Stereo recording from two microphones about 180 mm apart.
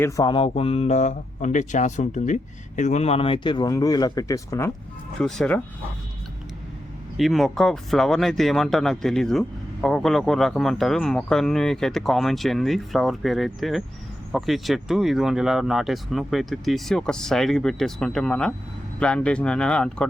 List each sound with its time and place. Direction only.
0.0 s speech: 25° left (ahead or behind)
5.2 s speech: 5° left (ahead or behind)
7.2 s speech: centre (ahead or behind)